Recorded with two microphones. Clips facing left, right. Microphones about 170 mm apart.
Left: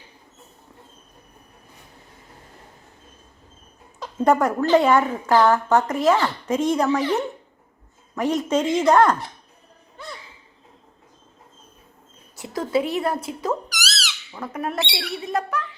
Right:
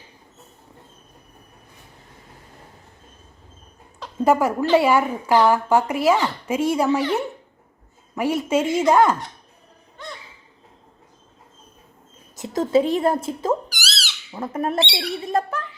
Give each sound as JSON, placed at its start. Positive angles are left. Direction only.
{"t": 4.2, "sound": "a woman's voice", "side_deg": -5}
{"t": 12.4, "sound": "speech", "side_deg": -25}